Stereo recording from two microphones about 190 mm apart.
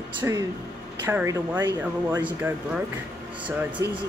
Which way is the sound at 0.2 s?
15° right (ahead or behind).